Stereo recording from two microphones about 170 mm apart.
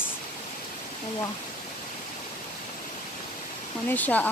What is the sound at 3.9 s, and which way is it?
Speech, 10° left (ahead or behind).